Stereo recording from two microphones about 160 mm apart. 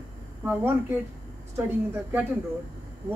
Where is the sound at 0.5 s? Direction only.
15° right (ahead or behind).